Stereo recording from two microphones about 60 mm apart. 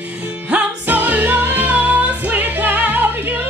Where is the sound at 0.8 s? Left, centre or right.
Right.